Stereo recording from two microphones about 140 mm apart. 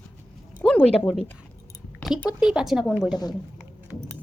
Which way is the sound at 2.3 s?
5° right (ahead or behind).